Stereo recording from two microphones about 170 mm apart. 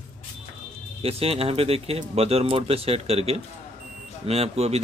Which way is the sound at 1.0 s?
35° right (ahead or behind).